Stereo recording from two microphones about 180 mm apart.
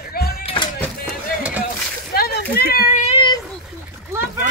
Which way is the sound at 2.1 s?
55° left (ahead or behind).